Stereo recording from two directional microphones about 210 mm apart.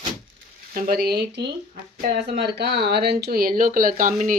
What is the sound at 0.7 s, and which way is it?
Speech, 45° right (ahead or behind).